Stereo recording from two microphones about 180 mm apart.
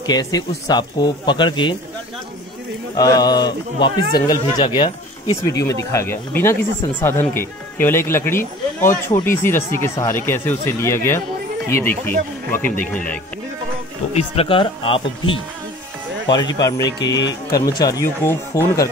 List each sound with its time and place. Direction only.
0.0 s speech: 20° left (ahead or behind)
3.0 s speech: 20° left (ahead or behind)
14.1 s speech: 35° left (ahead or behind)
17.2 s speech: 80° left
17.7 s speech: 20° left (ahead or behind)